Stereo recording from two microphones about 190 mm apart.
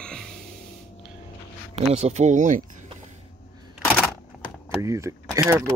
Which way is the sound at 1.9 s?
35° right (ahead or behind).